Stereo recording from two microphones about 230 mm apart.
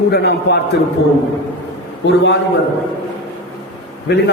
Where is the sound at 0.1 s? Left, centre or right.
Left.